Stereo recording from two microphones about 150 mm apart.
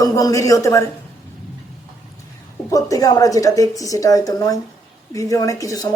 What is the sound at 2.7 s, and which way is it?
A woman's voice, 25° left (ahead or behind).